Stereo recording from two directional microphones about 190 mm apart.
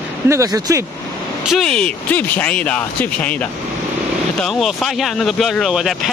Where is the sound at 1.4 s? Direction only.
Centre (ahead or behind).